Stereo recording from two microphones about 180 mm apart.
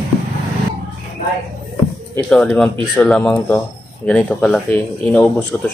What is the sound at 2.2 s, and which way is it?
A man's voice, 5° left (ahead or behind).